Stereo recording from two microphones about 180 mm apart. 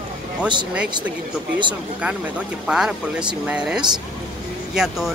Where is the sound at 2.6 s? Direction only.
5° right (ahead or behind).